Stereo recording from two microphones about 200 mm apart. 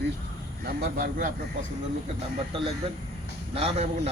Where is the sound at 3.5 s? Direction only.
30° right (ahead or behind).